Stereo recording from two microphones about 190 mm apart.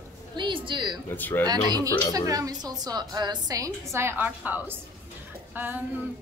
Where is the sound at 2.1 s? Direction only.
20° right (ahead or behind).